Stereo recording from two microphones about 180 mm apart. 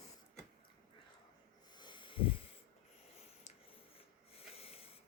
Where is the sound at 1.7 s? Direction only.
25° left (ahead or behind).